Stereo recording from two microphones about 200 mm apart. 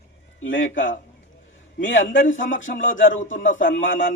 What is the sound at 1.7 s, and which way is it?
Speech, 70° left (ahead or behind).